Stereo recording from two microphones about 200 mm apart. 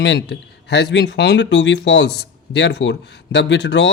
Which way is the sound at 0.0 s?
60° left (ahead or behind).